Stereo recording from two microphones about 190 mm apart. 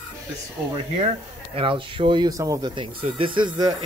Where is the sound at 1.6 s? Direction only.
25° right (ahead or behind).